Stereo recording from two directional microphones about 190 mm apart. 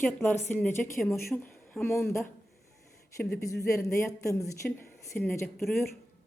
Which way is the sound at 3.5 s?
15° left (ahead or behind).